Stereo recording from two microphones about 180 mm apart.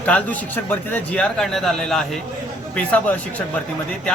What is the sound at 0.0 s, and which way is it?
Speech, 10° left (ahead or behind).